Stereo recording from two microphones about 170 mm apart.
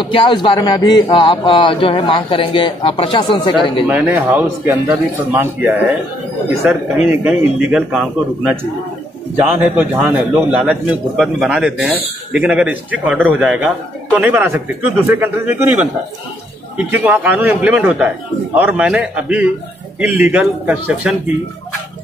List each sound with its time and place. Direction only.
0.0 s a man's voice: 30° left (ahead or behind)
3.8 s a man's voice: 10° right (ahead or behind)
7.1 s a man's voice: 5° right (ahead or behind)